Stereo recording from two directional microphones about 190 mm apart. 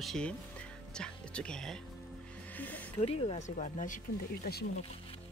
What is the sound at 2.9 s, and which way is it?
Speech, 30° left (ahead or behind).